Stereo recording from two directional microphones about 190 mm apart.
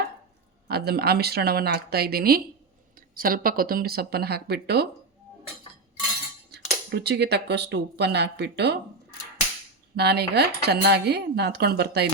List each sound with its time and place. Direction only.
0.7 s speech: 55° right (ahead or behind)
6.9 s speech: 60° right (ahead or behind)